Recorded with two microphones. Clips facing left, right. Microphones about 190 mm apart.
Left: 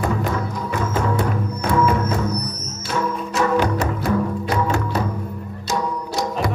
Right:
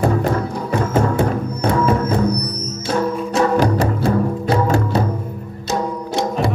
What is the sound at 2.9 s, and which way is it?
Music, 35° right (ahead or behind).